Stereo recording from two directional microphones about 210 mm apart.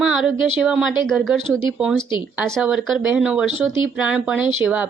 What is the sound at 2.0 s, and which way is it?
Speech, 20° left (ahead or behind).